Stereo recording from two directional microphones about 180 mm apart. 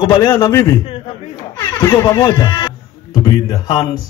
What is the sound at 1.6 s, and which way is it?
Speech, 20° left (ahead or behind).